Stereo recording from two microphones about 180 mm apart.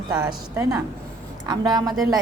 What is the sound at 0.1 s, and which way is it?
A woman's voice, 20° right (ahead or behind).